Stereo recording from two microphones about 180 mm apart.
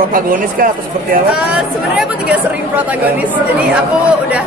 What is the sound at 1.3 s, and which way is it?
Speech, 5° right (ahead or behind).